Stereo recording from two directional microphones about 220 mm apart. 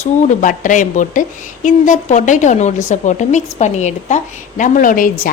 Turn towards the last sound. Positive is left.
turn(degrees=40)  # may be behind; listen again after turning